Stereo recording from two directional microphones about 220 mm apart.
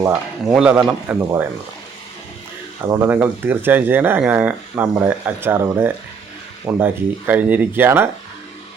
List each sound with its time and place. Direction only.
0.0 s speech: 5° right (ahead or behind)
2.9 s speech: 10° right (ahead or behind)